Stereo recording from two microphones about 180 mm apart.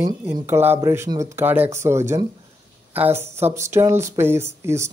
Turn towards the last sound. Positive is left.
turn(degrees=-15)  # may be behind; listen again after turning